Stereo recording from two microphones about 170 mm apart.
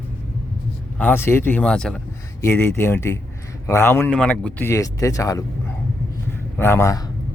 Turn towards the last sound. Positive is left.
turn(degrees=20)  # may be behind; listen again after turning